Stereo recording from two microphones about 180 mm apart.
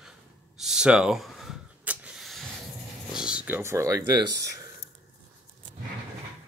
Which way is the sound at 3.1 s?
5° right (ahead or behind).